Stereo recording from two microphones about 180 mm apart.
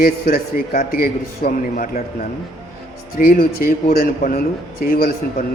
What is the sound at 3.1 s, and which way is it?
A man's voice, 50° left (ahead or behind).